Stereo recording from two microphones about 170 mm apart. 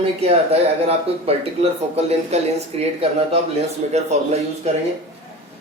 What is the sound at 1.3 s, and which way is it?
A man's voice, 35° right (ahead or behind).